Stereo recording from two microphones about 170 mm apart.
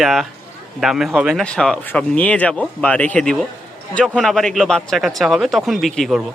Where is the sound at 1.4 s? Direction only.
5° left (ahead or behind).